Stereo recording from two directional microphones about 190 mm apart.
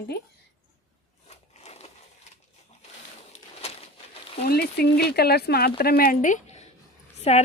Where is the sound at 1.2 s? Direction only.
35° left (ahead or behind).